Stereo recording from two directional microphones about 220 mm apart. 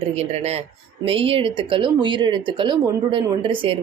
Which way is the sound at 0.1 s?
30° right (ahead or behind).